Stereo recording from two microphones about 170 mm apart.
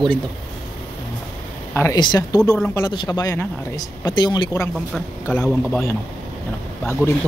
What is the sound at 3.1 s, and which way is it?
Speech, 15° left (ahead or behind).